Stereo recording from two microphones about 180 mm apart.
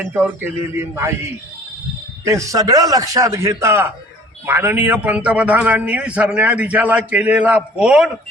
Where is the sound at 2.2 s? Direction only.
15° right (ahead or behind).